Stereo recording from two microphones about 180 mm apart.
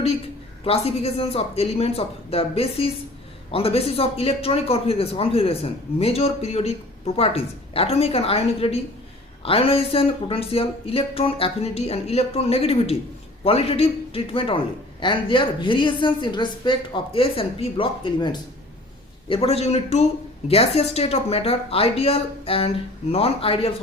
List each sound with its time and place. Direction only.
0.6 s a man's voice: 30° left (ahead or behind)